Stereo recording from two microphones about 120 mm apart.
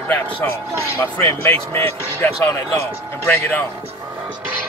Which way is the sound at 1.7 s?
20° left (ahead or behind).